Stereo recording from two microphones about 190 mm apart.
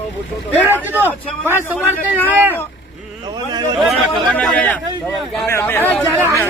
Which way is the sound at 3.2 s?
20° right (ahead or behind).